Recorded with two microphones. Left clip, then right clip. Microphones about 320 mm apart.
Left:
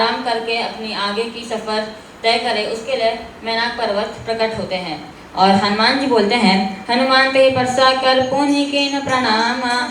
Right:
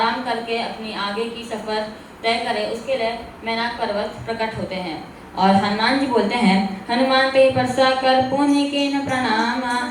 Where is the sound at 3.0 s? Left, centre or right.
Left.